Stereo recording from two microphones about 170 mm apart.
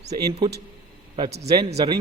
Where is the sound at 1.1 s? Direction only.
35° right (ahead or behind).